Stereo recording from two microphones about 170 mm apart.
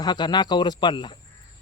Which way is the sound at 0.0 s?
25° left (ahead or behind).